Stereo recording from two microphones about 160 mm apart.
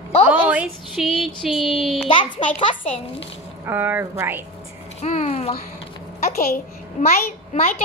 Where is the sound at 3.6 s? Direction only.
15° right (ahead or behind).